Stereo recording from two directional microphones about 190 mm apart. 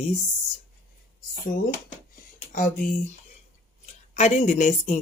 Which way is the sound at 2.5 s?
45° left (ahead or behind).